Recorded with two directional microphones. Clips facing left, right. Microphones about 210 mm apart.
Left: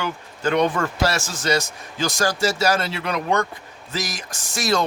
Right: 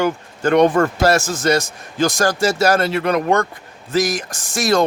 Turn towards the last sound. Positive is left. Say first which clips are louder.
# right 5 dB
turn(degrees=-50)  # may be behind; listen again after turning